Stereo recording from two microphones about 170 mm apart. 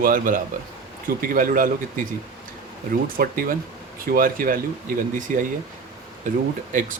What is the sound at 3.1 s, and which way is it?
Speech, 60° right (ahead or behind).